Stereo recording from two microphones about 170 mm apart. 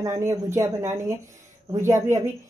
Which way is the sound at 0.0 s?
15° right (ahead or behind).